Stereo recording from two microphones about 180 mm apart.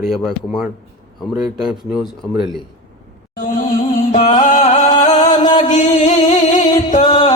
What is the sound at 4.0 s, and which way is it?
Music, 45° left (ahead or behind).